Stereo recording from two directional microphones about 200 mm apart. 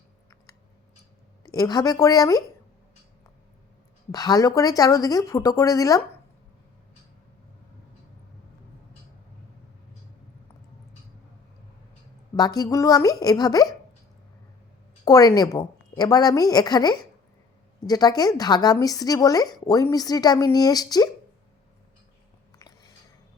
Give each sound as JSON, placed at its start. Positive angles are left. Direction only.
{"t": 1.5, "sound": "speech", "side_deg": 20}
{"t": 4.1, "sound": "speech", "side_deg": 20}
{"t": 12.4, "sound": "speech", "side_deg": 20}
{"t": 15.0, "sound": "speech", "side_deg": 20}
{"t": 22.5, "sound": "a sound", "side_deg": 20}